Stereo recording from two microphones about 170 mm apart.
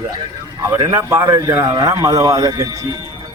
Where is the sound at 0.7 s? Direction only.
15° right (ahead or behind).